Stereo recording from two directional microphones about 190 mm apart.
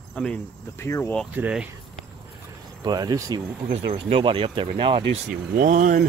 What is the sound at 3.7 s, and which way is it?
Speech, 30° right (ahead or behind).